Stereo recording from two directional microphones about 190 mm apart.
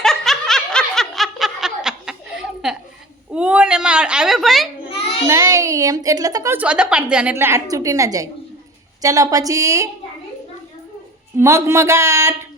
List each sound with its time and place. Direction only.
0.0 s snicker: centre (ahead or behind)
3.3 s speech: 5° right (ahead or behind)
5.3 s a woman's voice: 15° right (ahead or behind)
11.3 s a woman's voice: 15° right (ahead or behind)